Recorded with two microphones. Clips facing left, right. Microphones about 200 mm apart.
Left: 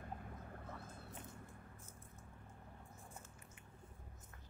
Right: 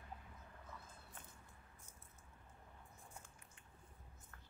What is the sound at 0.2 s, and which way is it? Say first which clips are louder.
Vehicle: left 8 dB; 55° left (ahead or behind).